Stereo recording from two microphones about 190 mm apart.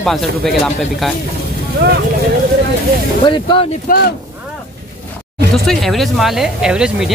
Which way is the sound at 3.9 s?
50° left (ahead or behind).